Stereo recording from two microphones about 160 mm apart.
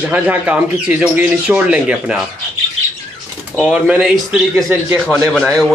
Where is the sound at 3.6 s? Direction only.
5° right (ahead or behind).